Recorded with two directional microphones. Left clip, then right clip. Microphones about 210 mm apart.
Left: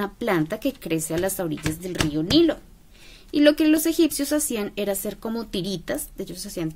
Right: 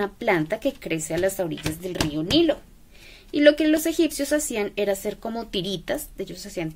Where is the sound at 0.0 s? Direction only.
40° left (ahead or behind).